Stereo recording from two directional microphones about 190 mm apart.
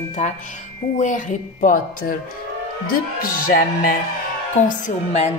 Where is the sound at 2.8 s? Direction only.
50° left (ahead or behind).